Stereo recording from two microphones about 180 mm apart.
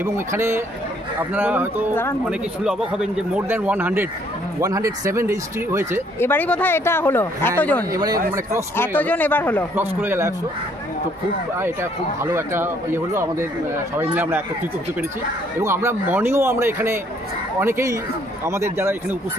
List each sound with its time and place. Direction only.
0.0 s speech: 15° right (ahead or behind)
6.1 s speech: 10° left (ahead or behind)
7.9 s speech: 20° right (ahead or behind)
8.7 s speech: 10° left (ahead or behind)
9.8 s speech: 15° right (ahead or behind)
11.5 s speech: 15° right (ahead or behind)
15.6 s speech: 15° right (ahead or behind)